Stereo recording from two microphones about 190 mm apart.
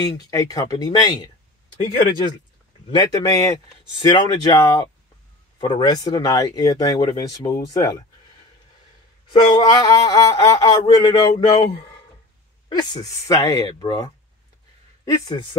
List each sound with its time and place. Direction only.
0.1 s speech: 20° left (ahead or behind)
9.6 s speech: 20° left (ahead or behind)